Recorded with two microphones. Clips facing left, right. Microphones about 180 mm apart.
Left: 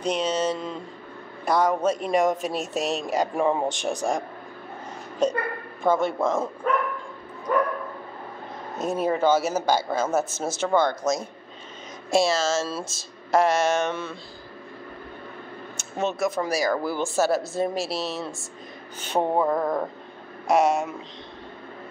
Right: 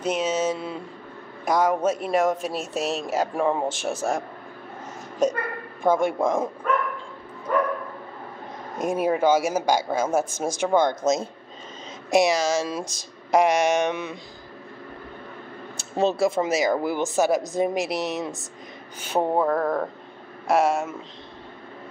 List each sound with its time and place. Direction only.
0.0 s a woman's voice: 5° right (ahead or behind)
5.2 s a woman's voice: 10° right (ahead or behind)
8.7 s a woman's voice: 10° right (ahead or behind)
15.8 s speech: 35° right (ahead or behind); by 18.4 s 20° right (ahead or behind)
18.9 s a man's voice: 5° right (ahead or behind)